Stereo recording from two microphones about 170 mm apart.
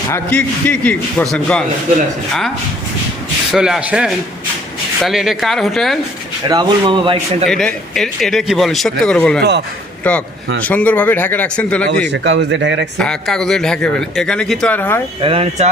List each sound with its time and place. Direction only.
0.1 s a man's voice: 10° left (ahead or behind)
3.5 s speech: 5° right (ahead or behind)
6.5 s a man's voice: 25° right (ahead or behind)
7.4 s a man's voice: 5° left (ahead or behind)
11.9 s speech: 90° right
13.0 s speech: 5° left (ahead or behind)
15.2 s speech: 35° right (ahead or behind)